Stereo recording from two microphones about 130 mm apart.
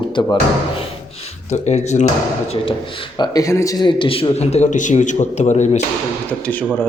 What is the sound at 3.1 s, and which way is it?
Speech, 30° left (ahead or behind).